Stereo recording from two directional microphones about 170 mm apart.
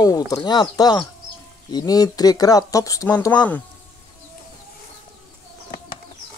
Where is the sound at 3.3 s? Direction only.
10° left (ahead or behind).